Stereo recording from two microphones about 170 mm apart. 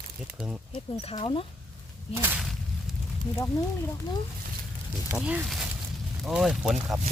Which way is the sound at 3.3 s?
15° left (ahead or behind).